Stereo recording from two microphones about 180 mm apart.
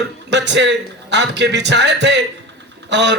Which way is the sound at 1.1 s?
75° right (ahead or behind).